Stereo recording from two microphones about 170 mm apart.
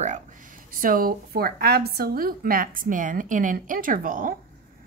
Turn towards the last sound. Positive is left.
turn(degrees=-55)  # may be behind; listen again after turning